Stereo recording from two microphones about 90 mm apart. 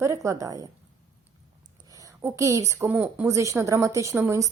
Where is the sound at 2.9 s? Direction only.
15° right (ahead or behind).